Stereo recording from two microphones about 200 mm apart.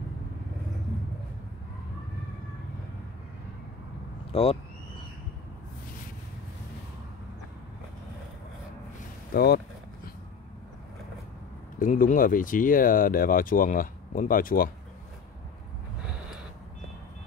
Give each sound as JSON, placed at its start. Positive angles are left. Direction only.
{"t": 4.3, "sound": "speech", "side_deg": 30}
{"t": 9.3, "sound": "speech", "side_deg": 50}
{"t": 11.8, "sound": "speech", "side_deg": 40}